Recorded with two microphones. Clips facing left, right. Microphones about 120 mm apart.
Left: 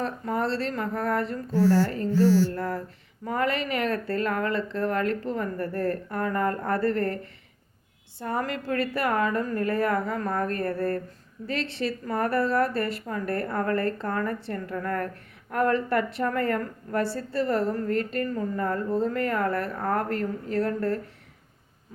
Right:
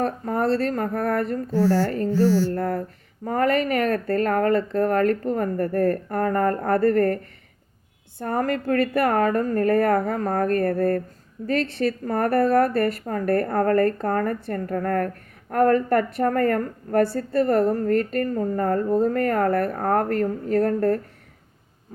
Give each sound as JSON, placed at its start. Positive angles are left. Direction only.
{"t": 0.0, "sound": "speech", "side_deg": -45}
{"t": 2.5, "sound": "a woman's voice", "side_deg": -50}
{"t": 8.2, "sound": "a woman's voice", "side_deg": -50}